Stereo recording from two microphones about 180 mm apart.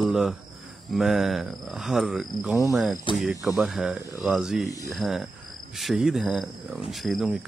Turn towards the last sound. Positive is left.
turn(degrees=0)  # may be behind; listen again after turning